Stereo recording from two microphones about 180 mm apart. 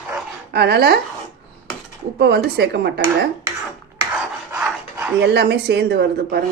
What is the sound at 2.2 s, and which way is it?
Speech, 65° right (ahead or behind).